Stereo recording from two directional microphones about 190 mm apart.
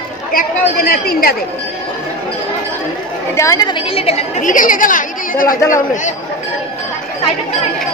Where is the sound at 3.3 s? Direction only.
15° left (ahead or behind); by 5.5 s 45° left (ahead or behind).